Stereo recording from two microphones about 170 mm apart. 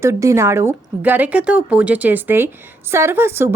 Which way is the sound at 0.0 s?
15° right (ahead or behind).